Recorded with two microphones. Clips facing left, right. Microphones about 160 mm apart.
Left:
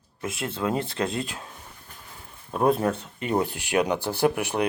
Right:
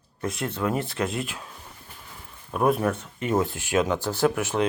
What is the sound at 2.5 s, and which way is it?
Speech, 25° left (ahead or behind).